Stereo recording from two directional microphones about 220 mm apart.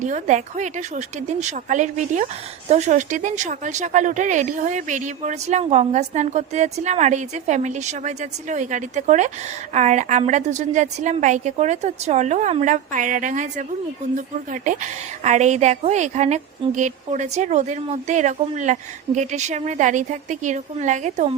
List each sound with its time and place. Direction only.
0.0 s a woman's voice: 35° right (ahead or behind)